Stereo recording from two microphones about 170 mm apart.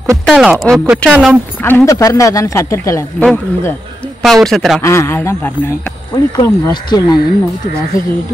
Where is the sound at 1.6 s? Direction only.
15° left (ahead or behind).